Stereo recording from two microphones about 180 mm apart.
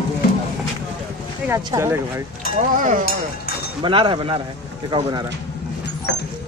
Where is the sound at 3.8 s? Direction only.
30° right (ahead or behind).